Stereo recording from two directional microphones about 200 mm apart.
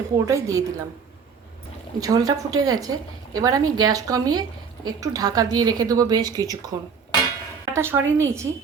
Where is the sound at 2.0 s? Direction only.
20° right (ahead or behind).